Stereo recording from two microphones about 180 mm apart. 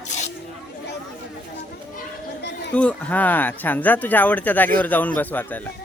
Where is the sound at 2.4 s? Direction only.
70° left (ahead or behind).